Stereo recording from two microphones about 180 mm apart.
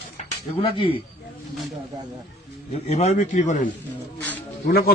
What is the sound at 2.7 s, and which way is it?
Speech, 35° left (ahead or behind).